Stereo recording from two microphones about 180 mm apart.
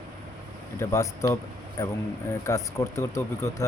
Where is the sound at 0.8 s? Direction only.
15° left (ahead or behind).